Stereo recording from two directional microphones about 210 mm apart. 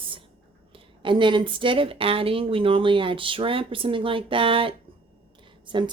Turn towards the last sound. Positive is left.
turn(degrees=-20)  # may be behind; listen again after turning